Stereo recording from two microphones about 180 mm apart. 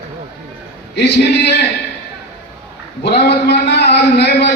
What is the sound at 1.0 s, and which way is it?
Speech, 70° left (ahead or behind).